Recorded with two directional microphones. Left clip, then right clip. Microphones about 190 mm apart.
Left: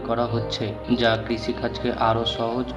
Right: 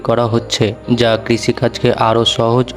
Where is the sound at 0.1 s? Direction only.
50° right (ahead or behind).